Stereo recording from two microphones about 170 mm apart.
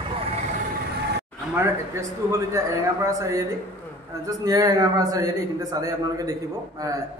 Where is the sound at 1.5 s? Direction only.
15° right (ahead or behind).